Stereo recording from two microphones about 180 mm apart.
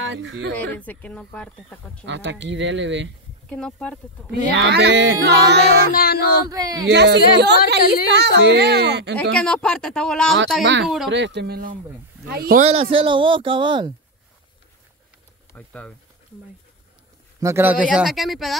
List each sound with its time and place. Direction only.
0.0 s speech: 90° right
0.6 s speech: 10° left (ahead or behind)
2.0 s speech: 85° right
3.4 s speech: 5° left (ahead or behind)
4.6 s speech: 75° right (ahead or behind)
5.9 s a sound: 60° left (ahead or behind)
6.5 s speech: 20° right (ahead or behind)
6.9 s speech: 70° right (ahead or behind)
9.3 s speech: 5° left (ahead or behind)
10.6 s speech: 80° right; by 12.6 s 55° right (ahead or behind)
12.9 s speech: 30° right (ahead or behind)
15.5 s speech: 10° left (ahead or behind)
17.4 s speech: 15° right (ahead or behind)